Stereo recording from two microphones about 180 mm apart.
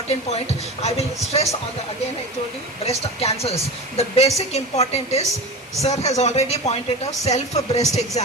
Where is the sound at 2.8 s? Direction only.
35° left (ahead or behind).